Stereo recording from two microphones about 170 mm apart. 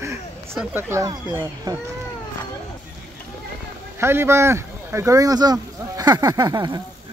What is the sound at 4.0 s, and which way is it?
Speech, 15° right (ahead or behind).